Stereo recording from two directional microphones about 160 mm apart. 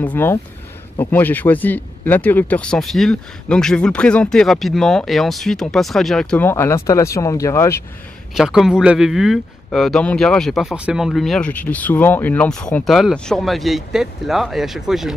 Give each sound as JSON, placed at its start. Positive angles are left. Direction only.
{"t": 0.0, "sound": "speech", "side_deg": 10}
{"t": 6.4, "sound": "speech", "side_deg": 15}
{"t": 8.4, "sound": "speech", "side_deg": 0}